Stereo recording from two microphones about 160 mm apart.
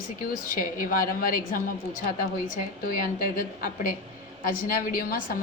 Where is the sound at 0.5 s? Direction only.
65° left (ahead or behind).